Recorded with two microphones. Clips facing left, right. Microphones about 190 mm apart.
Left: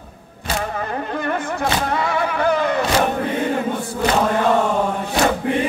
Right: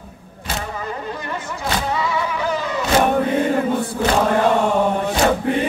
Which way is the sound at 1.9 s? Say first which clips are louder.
Left 1 dB; 55° left (ahead or behind).